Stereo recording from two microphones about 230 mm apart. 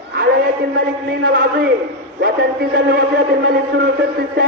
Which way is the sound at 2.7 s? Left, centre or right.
Right.